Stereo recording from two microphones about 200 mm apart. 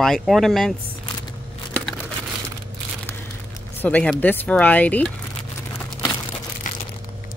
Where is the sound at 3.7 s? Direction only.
5° left (ahead or behind).